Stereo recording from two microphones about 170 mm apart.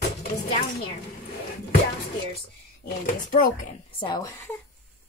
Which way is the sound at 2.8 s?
50° left (ahead or behind).